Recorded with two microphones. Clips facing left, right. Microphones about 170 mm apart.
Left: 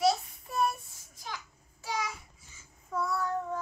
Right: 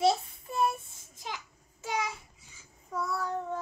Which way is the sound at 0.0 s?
25° right (ahead or behind).